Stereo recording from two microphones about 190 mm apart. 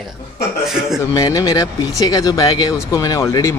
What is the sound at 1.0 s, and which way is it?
Speech, 20° left (ahead or behind).